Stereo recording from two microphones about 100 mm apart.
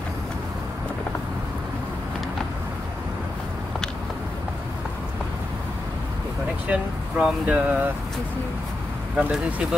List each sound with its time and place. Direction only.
6.7 s speech: 15° right (ahead or behind)
9.1 s speech: 5° right (ahead or behind)